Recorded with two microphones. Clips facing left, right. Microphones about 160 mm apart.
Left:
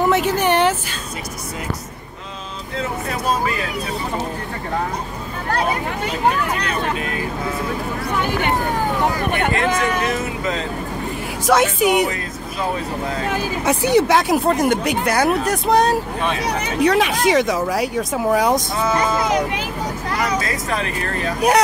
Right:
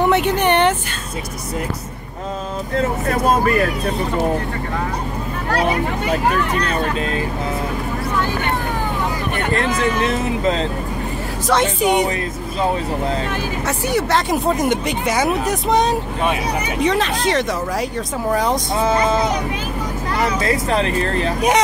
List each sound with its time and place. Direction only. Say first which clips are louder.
0.0 s speech: right 1 dB; centre (ahead or behind)
2.7 s speech: right 5 dB; 50° right (ahead or behind)
6.6 s speech: right 2 dB; 30° right (ahead or behind)
10.0 s speech: right 3 dB; 30° right (ahead or behind)
11.4 s speech: left 1 dB; 5° left (ahead or behind)
13.7 s speech: left 5 dB; 15° left (ahead or behind)
18.8 s speech: right 2 dB; 30° right (ahead or behind)
21.4 s speech: left 2 dB; 5° left (ahead or behind)